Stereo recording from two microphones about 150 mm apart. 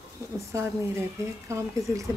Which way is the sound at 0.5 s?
20° right (ahead or behind).